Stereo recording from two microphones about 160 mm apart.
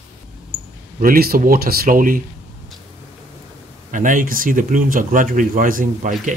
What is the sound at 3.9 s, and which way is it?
Speech, 55° right (ahead or behind).